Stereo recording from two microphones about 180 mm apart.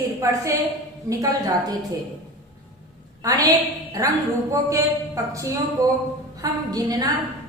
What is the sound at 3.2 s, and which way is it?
Speech, 20° right (ahead or behind).